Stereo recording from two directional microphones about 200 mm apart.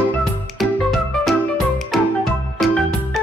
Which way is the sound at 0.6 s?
Centre (ahead or behind).